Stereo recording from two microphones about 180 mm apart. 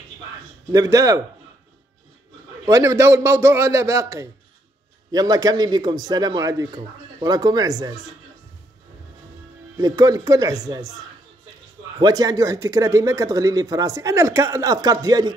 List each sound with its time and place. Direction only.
0.7 s speech: 20° right (ahead or behind)
2.6 s a man's voice: 20° right (ahead or behind)
9.8 s speech: 20° right (ahead or behind)
12.0 s speech: 20° right (ahead or behind)